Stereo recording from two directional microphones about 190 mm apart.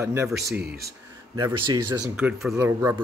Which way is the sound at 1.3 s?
25° right (ahead or behind).